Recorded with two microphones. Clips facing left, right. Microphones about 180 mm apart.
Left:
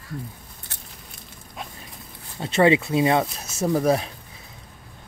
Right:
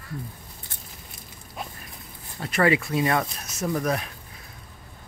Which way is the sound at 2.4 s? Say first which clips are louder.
Left 4 dB; 25° left (ahead or behind).